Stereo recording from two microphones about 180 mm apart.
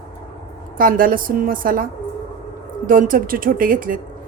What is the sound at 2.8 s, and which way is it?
A woman's voice, 50° right (ahead or behind).